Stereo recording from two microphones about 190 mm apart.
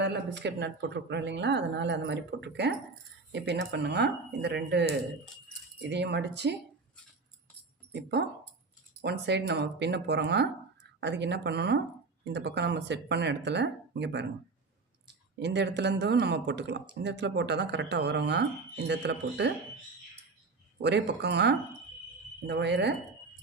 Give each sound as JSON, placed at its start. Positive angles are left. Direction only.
{"t": 0.0, "sound": "speech", "side_deg": -65}
{"t": 9.0, "sound": "speech", "side_deg": -60}
{"t": 15.4, "sound": "speech", "side_deg": -65}
{"t": 20.8, "sound": "speech", "side_deg": -65}